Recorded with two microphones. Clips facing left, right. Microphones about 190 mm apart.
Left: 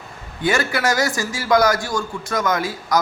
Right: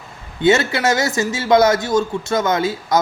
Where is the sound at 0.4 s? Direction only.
25° right (ahead or behind).